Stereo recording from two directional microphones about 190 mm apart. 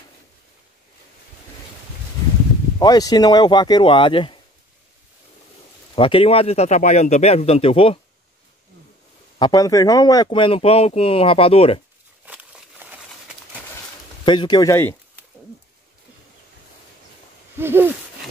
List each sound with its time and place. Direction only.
2.8 s speech: 20° left (ahead or behind)
5.9 s speech: 30° left (ahead or behind)
9.4 s speech: 20° left (ahead or behind)
12.3 s a sound: 5° right (ahead or behind)
14.2 s speech: 25° left (ahead or behind)
17.6 s hoot: 10° right (ahead or behind)